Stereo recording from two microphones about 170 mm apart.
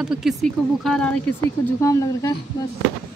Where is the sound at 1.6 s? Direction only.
20° left (ahead or behind).